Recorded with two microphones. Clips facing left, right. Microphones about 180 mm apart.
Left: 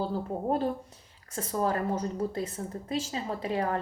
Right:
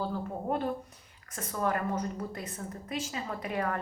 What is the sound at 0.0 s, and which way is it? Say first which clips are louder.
A woman's voice: left 3 dB; 30° left (ahead or behind).